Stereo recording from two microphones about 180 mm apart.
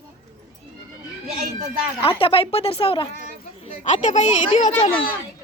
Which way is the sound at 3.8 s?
40° left (ahead or behind).